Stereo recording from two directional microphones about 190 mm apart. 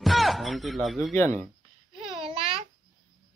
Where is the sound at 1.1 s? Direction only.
10° left (ahead or behind).